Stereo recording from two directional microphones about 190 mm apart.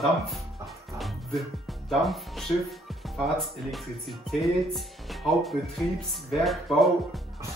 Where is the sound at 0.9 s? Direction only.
Centre (ahead or behind).